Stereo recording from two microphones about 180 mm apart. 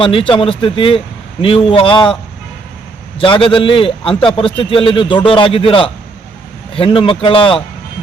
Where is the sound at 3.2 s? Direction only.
30° left (ahead or behind).